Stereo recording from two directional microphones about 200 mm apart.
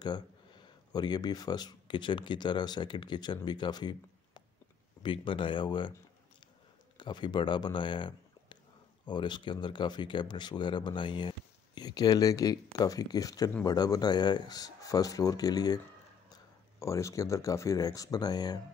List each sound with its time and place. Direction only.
0.0 s speech: 20° left (ahead or behind)
7.0 s speech: 20° left (ahead or behind)
16.8 s speech: 15° left (ahead or behind)